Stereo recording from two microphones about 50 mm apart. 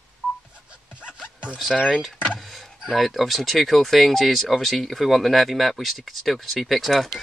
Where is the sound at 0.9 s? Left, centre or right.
Right.